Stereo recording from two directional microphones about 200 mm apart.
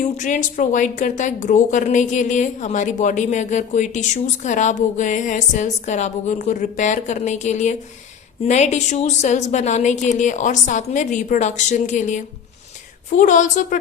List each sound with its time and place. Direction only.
0.2 s a woman's voice: 40° left (ahead or behind)